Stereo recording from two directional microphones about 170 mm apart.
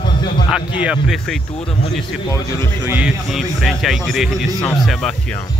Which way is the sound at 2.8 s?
5° right (ahead or behind).